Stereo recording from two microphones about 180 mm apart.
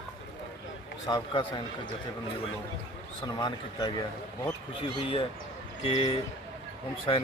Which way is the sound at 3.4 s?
25° left (ahead or behind).